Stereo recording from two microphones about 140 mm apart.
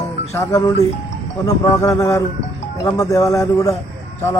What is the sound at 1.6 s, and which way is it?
A man's voice, 20° left (ahead or behind).